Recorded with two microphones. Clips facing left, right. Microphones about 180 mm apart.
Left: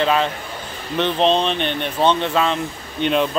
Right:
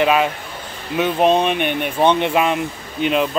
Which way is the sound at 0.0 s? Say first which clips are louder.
Right 2 dB; 10° right (ahead or behind).